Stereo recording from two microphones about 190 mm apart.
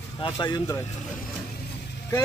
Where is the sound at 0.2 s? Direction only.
25° left (ahead or behind).